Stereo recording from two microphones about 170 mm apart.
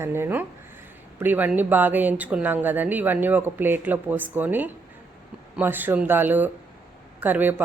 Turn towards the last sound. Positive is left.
turn(degrees=-10)  # may be behind; listen again after turning